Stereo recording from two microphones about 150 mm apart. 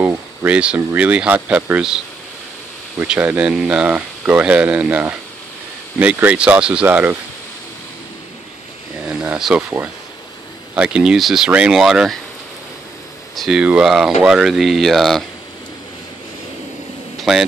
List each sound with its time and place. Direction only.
0.0 s speech: 10° right (ahead or behind)
3.0 s speech: 10° right (ahead or behind)
9.0 s a sound: 5° right (ahead or behind)
10.7 s speech: 5° right (ahead or behind)
13.4 s speech: 5° right (ahead or behind)
17.2 s a sound: centre (ahead or behind)